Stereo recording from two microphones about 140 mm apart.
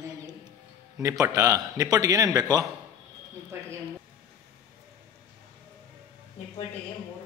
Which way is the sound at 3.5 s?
15° right (ahead or behind).